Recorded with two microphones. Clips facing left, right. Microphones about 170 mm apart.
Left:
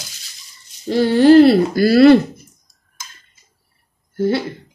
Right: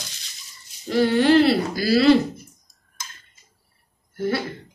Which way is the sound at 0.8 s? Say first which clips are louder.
Left 6 dB; 30° left (ahead or behind).